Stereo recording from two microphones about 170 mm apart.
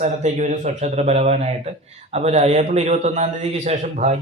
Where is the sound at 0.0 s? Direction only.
45° right (ahead or behind).